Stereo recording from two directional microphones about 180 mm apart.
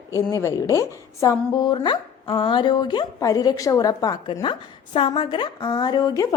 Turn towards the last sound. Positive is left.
turn(degrees=20)  # may be behind; listen again after turning